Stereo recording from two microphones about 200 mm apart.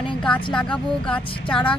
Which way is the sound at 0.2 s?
5° left (ahead or behind).